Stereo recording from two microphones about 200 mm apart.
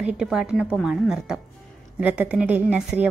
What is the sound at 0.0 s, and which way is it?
Speech, 5° right (ahead or behind).